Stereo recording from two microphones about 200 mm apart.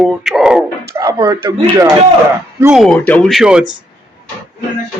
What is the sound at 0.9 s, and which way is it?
Speech, 15° right (ahead or behind).